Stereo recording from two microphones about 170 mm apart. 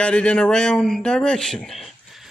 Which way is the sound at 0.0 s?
5° left (ahead or behind).